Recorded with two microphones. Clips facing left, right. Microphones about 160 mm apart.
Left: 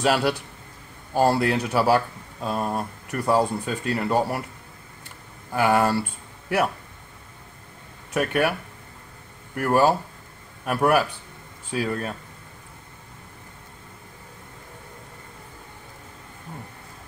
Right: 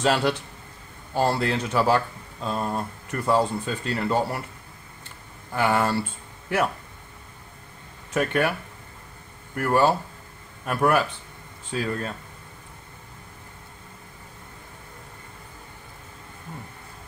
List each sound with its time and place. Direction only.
0.0 s speech: 10° left (ahead or behind)
5.5 s speech: 10° left (ahead or behind)
8.1 s speech: 10° left (ahead or behind)
9.6 s speech: 10° left (ahead or behind)